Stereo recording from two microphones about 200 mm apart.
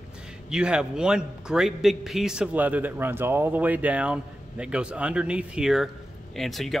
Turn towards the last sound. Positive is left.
turn(degrees=0)  # may be behind; listen again after turning